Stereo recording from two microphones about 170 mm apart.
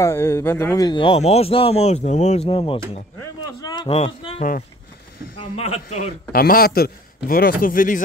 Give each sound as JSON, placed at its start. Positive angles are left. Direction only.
{"t": 0.0, "sound": "speech", "side_deg": 15}
{"t": 3.2, "sound": "a sound", "side_deg": 25}
{"t": 3.9, "sound": "speech", "side_deg": 35}
{"t": 6.3, "sound": "speech", "side_deg": 60}